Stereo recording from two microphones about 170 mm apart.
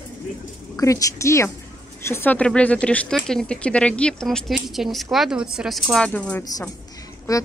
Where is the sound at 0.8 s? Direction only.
20° left (ahead or behind).